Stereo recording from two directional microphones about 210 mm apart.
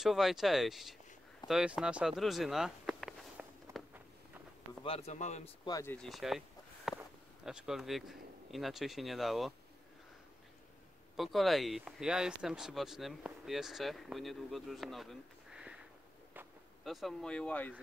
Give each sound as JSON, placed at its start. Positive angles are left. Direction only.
{"t": 0.0, "sound": "speech", "side_deg": 0}
{"t": 1.5, "sound": "a sound", "side_deg": -5}
{"t": 4.8, "sound": "a man's voice", "side_deg": 30}
{"t": 5.7, "sound": "speech", "side_deg": 15}
{"t": 5.9, "sound": "a sound", "side_deg": 0}
{"t": 7.4, "sound": "speech", "side_deg": 0}
{"t": 11.1, "sound": "speech", "side_deg": 0}
{"t": 16.8, "sound": "speech", "side_deg": 0}